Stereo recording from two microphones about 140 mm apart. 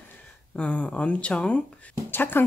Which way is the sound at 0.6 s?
10° left (ahead or behind).